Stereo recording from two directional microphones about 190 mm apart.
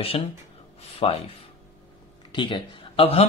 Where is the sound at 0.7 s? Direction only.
30° left (ahead or behind).